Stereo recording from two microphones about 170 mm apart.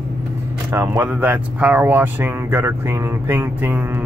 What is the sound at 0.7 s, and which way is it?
Speech, 15° right (ahead or behind).